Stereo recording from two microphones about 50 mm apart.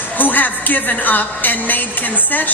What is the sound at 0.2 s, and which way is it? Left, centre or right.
A woman's voice, left.